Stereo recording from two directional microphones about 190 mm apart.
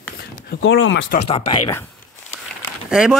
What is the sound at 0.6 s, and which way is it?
Speech, 70° left (ahead or behind).